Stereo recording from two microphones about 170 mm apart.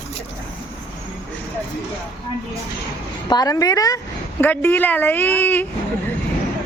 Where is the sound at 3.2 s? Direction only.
25° left (ahead or behind).